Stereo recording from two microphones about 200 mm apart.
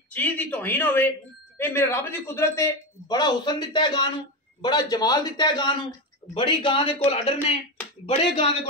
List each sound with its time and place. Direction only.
0.1 s a man's voice: 10° left (ahead or behind); by 8.5 s 30° left (ahead or behind)